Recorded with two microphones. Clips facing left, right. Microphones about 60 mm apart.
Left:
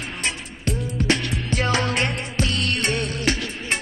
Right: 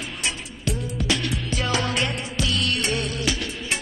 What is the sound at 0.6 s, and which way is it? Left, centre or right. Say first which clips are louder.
Music: left 3 dB; left.